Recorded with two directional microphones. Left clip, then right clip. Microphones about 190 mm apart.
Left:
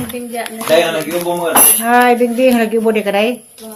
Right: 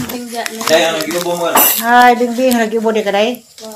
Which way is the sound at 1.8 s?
25° left (ahead or behind).